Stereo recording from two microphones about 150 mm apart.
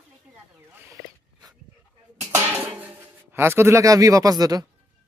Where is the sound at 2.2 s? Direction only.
20° right (ahead or behind).